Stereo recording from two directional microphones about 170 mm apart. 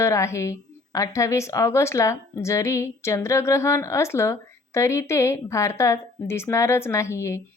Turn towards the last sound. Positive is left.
turn(degrees=15)  # may be behind; listen again after turning